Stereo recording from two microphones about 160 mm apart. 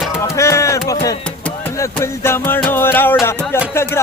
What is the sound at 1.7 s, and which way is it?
Speech, 20° left (ahead or behind).